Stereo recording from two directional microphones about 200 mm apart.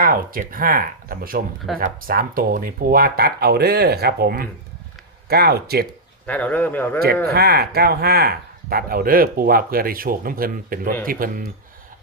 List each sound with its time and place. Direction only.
0.0 s speech: 45° right (ahead or behind)
6.2 s speech: 5° left (ahead or behind)
7.3 s speech: 50° right (ahead or behind)